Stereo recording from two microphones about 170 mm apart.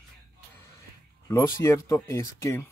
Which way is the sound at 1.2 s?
15° left (ahead or behind).